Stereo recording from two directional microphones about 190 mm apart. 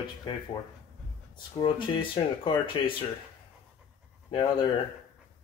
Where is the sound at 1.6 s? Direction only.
25° left (ahead or behind).